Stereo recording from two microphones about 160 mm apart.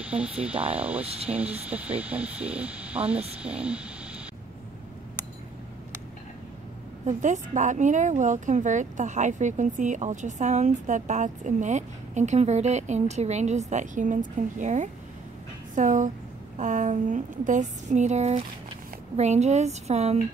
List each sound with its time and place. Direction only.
0.0 s speech: 5° right (ahead or behind)
1.0 s speech: 40° right (ahead or behind)
1.3 s speech: 10° right (ahead or behind)
7.1 s a woman's voice: 50° right (ahead or behind)